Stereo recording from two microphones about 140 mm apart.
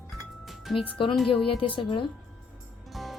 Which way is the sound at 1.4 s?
40° left (ahead or behind).